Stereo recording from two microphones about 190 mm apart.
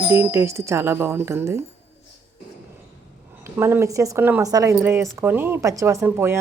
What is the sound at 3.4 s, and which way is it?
A woman's voice, 10° right (ahead or behind).